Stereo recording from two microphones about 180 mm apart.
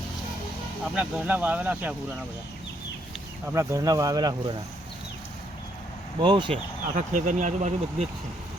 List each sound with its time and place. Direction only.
0.9 s speech: 10° right (ahead or behind)
3.5 s speech: 15° right (ahead or behind)
6.1 s speech: 25° right (ahead or behind)
6.9 s speech: 45° right (ahead or behind)